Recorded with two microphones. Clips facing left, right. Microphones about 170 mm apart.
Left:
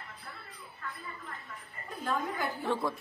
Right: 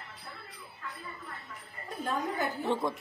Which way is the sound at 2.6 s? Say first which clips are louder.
Right 1 dB; 20° right (ahead or behind).